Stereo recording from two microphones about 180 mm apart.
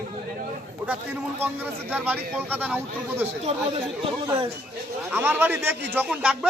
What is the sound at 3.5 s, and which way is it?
Speech, 35° right (ahead or behind).